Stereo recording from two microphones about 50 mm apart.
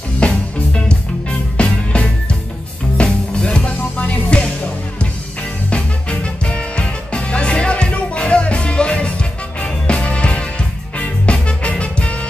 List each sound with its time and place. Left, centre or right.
0.2 s music: left